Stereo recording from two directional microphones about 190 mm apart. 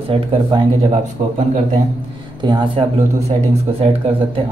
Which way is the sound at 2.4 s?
25° right (ahead or behind).